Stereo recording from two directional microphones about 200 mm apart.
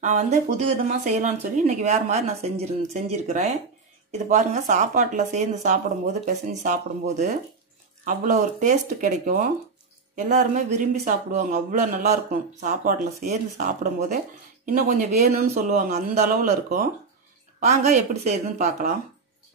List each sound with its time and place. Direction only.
0.0 s a man's voice: 35° right (ahead or behind)
17.6 s speech: 35° right (ahead or behind)